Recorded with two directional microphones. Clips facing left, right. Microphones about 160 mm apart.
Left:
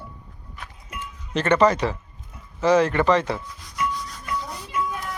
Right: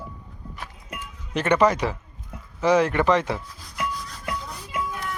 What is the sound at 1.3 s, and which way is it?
Speech, 10° right (ahead or behind).